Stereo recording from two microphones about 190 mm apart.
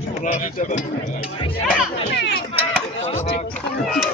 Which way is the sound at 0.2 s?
45° left (ahead or behind).